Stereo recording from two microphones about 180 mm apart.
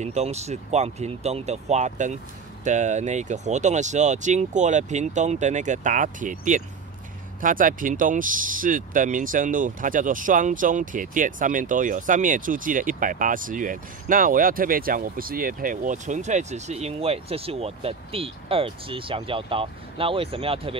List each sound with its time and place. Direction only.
0.0 s speech: 40° right (ahead or behind)